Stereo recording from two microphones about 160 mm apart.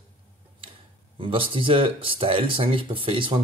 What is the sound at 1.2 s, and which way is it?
Speech, 35° right (ahead or behind).